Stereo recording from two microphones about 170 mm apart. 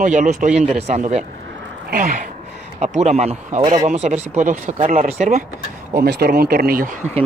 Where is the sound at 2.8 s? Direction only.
40° right (ahead or behind).